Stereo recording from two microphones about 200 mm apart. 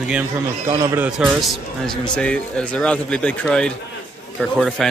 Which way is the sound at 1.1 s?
Centre (ahead or behind).